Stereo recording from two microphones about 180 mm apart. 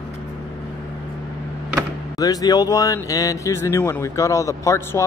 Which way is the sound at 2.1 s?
20° left (ahead or behind).